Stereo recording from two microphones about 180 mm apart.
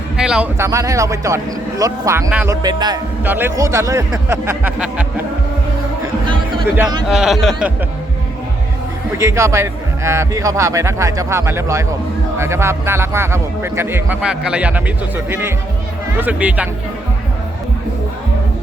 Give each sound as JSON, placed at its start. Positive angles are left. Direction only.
{"t": 0.2, "sound": "a sound", "side_deg": -5}
{"t": 0.6, "sound": "speech", "side_deg": -20}
{"t": 3.2, "sound": "speech", "side_deg": -10}
{"t": 7.1, "sound": "a man's voice", "side_deg": 0}
{"t": 9.1, "sound": "speech", "side_deg": -15}